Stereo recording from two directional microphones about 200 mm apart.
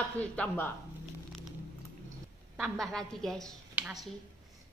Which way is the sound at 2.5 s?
Centre (ahead or behind).